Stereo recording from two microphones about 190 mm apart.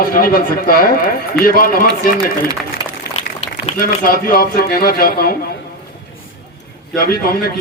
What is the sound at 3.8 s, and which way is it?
A man's voice, 50° left (ahead or behind).